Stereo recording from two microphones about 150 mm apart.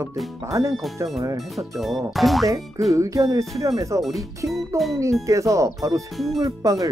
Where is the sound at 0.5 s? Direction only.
20° right (ahead or behind).